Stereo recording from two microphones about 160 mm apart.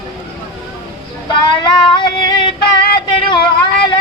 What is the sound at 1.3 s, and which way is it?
Female singing, 30° left (ahead or behind).